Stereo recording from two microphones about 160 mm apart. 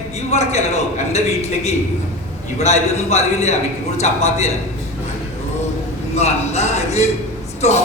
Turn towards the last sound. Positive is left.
turn(degrees=40)  # may be behind; listen again after turning